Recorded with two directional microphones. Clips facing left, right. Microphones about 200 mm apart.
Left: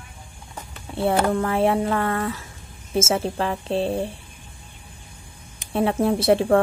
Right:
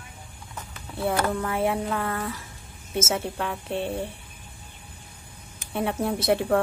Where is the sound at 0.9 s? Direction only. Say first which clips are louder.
Left 5 dB; 30° left (ahead or behind).